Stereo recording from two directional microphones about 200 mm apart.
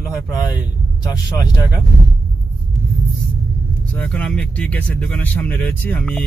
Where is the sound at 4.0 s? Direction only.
5° left (ahead or behind).